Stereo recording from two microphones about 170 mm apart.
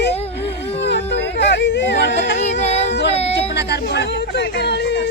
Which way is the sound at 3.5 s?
80° left.